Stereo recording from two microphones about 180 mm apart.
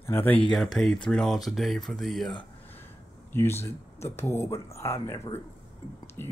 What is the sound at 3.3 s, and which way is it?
Speech, 15° left (ahead or behind).